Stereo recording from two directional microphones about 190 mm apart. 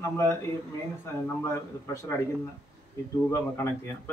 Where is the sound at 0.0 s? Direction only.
15° left (ahead or behind).